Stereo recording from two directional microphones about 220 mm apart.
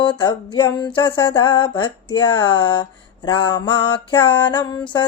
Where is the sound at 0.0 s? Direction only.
20° left (ahead or behind).